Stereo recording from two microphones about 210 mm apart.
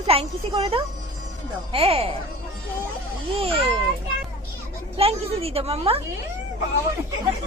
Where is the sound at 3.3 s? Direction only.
25° right (ahead or behind).